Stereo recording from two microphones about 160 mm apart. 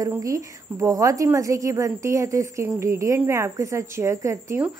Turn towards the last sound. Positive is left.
turn(degrees=-20)  # may be behind; listen again after turning